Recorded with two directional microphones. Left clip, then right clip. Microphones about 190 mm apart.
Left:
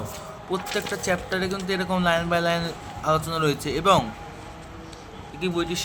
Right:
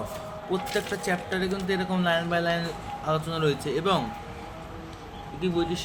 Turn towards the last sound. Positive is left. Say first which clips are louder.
# left 1 dB
turn(degrees=25)  # may be behind; listen again after turning